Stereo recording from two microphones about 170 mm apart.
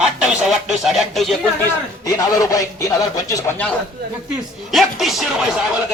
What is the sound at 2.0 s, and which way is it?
Speech, 20° left (ahead or behind).